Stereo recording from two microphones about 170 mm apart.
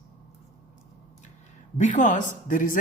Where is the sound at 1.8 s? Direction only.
45° left (ahead or behind).